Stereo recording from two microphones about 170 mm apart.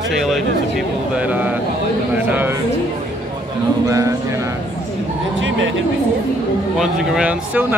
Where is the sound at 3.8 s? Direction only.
20° right (ahead or behind).